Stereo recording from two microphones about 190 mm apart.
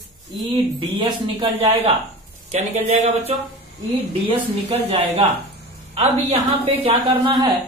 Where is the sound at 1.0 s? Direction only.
30° right (ahead or behind).